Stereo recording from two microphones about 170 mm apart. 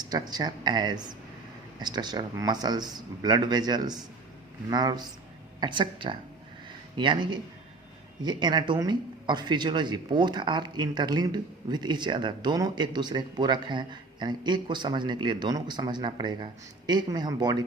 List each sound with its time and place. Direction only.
0.0 s speech: 25° right (ahead or behind)